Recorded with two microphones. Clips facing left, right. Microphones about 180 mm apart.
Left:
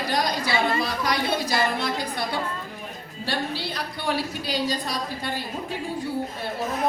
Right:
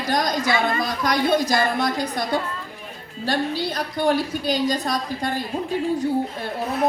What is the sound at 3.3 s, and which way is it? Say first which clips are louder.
A woman's voice: right 5 dB; 45° right (ahead or behind).